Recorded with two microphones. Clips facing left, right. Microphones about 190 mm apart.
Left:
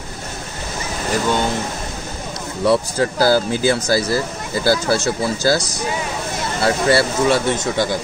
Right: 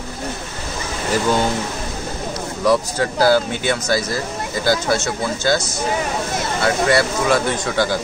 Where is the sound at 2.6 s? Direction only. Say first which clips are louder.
Left 1 dB; 30° left (ahead or behind).